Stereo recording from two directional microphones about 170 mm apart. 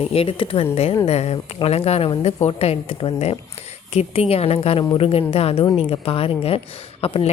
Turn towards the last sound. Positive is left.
turn(degrees=35)  # may be behind; listen again after turning